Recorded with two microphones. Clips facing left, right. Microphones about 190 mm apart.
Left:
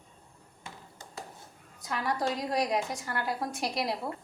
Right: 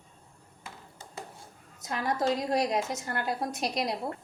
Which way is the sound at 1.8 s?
20° right (ahead or behind).